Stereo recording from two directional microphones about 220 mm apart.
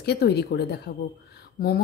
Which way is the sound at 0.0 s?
50° left (ahead or behind).